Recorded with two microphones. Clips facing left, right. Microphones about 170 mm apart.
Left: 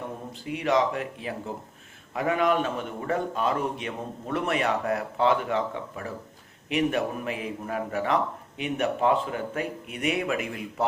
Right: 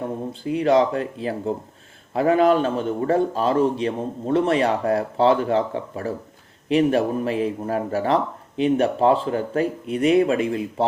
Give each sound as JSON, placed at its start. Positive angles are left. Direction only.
{"t": 0.4, "sound": "speech", "side_deg": -30}